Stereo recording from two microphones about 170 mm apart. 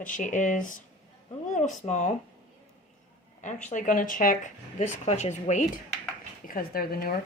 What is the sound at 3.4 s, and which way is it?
Speech, 45° left (ahead or behind).